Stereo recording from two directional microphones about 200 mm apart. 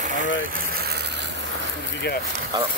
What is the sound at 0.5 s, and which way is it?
Vehicle, 50° right (ahead or behind).